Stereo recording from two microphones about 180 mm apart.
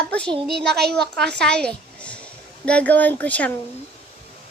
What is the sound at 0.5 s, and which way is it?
Speech, 65° right (ahead or behind).